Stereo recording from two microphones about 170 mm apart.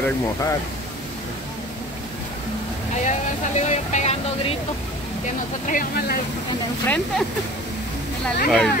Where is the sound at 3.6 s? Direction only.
45° left (ahead or behind).